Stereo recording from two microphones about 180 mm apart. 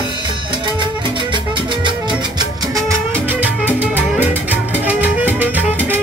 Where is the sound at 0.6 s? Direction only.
25° right (ahead or behind).